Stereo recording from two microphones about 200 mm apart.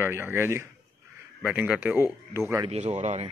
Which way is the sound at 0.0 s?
10° right (ahead or behind).